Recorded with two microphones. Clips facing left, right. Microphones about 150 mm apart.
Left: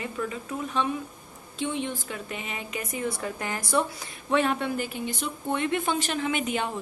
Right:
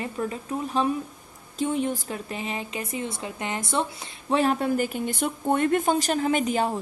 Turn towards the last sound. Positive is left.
turn(degrees=-35)  # may be behind; listen again after turning